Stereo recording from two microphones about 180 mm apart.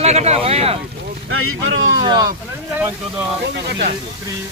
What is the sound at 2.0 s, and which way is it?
Speech, 25° right (ahead or behind).